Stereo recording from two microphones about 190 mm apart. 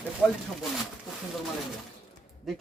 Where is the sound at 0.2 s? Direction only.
Centre (ahead or behind).